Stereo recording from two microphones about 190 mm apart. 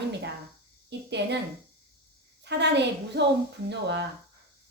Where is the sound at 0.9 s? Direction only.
65° right (ahead or behind).